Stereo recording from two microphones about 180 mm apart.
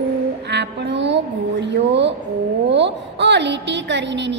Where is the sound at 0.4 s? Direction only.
70° right (ahead or behind).